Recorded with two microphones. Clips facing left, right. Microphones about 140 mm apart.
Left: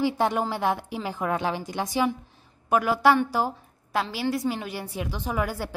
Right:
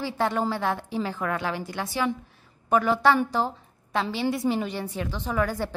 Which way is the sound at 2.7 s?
5° left (ahead or behind).